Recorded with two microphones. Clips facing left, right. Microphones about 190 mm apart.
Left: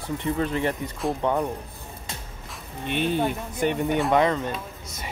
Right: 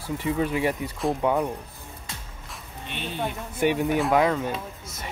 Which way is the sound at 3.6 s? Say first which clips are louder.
Right 1 dB; 5° right (ahead or behind).